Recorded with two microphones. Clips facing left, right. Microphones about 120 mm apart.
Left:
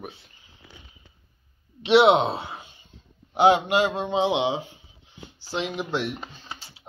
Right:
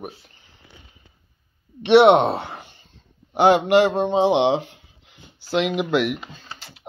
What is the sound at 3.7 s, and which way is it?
Speech, 60° right (ahead or behind).